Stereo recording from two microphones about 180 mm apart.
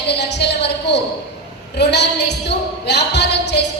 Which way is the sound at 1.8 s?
70° left (ahead or behind).